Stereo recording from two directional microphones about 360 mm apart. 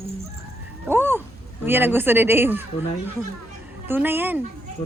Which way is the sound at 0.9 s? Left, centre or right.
Centre.